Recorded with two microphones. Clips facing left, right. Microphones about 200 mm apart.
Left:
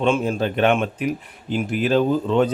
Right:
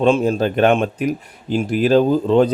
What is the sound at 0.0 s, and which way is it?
Speech, 35° right (ahead or behind).